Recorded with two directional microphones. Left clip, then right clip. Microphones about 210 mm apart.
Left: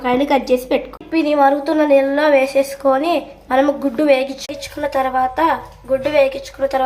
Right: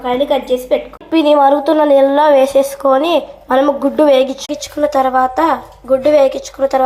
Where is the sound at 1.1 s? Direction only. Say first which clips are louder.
Right 5 dB; 15° right (ahead or behind).